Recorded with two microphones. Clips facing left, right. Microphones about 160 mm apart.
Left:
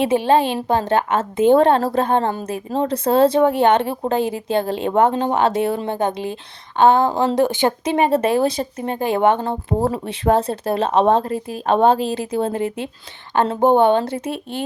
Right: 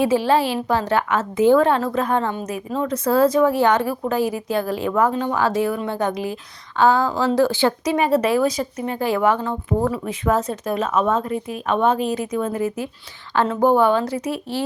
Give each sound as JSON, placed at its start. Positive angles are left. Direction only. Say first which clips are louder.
{"t": 0.0, "sound": "a woman's voice", "louder": "left 1 dB", "side_deg": 20}